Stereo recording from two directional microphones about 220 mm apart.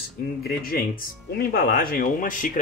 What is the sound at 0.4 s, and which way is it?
Speech, 45° left (ahead or behind).